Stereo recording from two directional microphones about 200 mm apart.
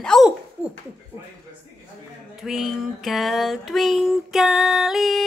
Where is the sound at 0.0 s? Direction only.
5° left (ahead or behind).